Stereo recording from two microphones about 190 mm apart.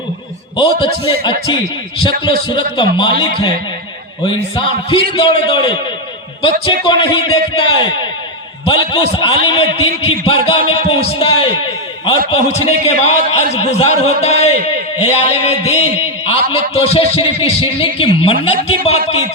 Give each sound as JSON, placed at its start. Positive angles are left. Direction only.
{"t": 0.5, "sound": "a man's voice", "side_deg": 25}
{"t": 4.3, "sound": "a man's voice", "side_deg": 25}
{"t": 6.8, "sound": "a man's voice", "side_deg": 25}